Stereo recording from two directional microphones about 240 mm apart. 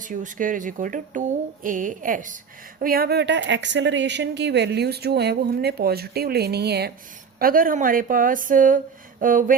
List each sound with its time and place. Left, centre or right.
0.0 s speech: right